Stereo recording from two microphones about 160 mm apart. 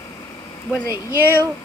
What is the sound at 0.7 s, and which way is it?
Speech, 15° left (ahead or behind).